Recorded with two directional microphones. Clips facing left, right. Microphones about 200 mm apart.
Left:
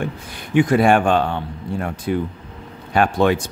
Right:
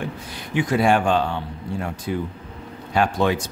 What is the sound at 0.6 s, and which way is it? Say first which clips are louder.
Speech: left 4 dB; 55° left (ahead or behind).